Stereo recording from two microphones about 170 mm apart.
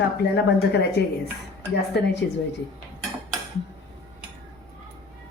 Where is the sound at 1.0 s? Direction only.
75° left (ahead or behind).